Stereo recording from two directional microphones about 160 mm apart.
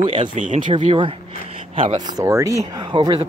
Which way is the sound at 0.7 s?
35° right (ahead or behind).